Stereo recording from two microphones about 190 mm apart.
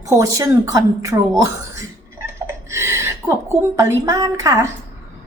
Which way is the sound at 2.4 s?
15° right (ahead or behind).